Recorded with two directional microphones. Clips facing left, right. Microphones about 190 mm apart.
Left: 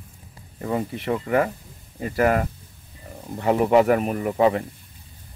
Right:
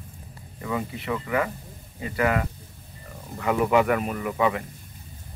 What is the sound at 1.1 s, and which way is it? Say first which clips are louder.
Speech: left 5 dB; 40° left (ahead or behind).